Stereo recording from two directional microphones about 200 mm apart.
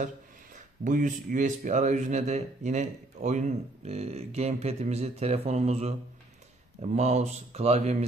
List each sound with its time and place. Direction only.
0.8 s speech: 40° right (ahead or behind)